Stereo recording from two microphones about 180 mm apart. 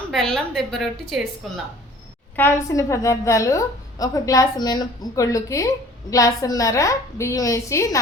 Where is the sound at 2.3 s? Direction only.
15° left (ahead or behind).